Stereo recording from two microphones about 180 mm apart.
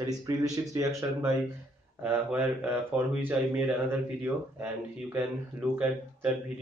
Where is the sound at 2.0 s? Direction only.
10° right (ahead or behind).